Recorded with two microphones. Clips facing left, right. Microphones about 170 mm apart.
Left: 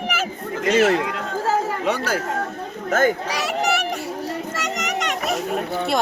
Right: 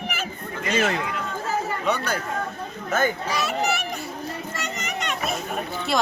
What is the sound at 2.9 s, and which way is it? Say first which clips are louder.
Children playing: left 4 dB; 85° left.